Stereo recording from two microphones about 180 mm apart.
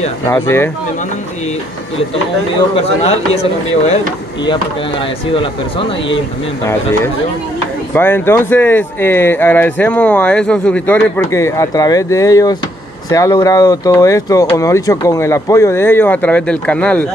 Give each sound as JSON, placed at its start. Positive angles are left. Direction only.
{"t": 0.3, "sound": "speech", "side_deg": 15}
{"t": 2.7, "sound": "speech", "side_deg": 35}
{"t": 6.6, "sound": "speech", "side_deg": 15}